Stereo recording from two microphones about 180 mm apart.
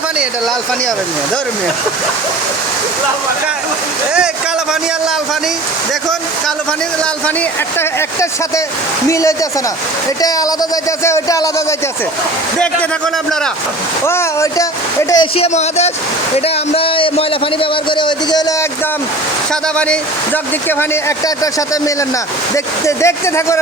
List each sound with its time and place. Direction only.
7.8 s a man's voice: 15° left (ahead or behind)
14.0 s a man's voice: 15° left (ahead or behind)
16.7 s a man's voice: 30° left (ahead or behind)
19.7 s speech: 5° left (ahead or behind)